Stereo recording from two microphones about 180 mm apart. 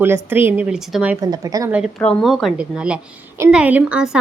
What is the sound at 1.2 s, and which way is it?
Speech, 20° right (ahead or behind).